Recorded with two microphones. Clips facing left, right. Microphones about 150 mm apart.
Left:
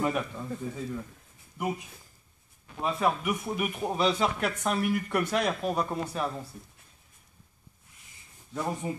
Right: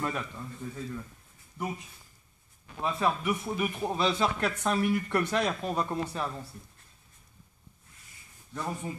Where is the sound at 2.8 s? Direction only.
10° left (ahead or behind).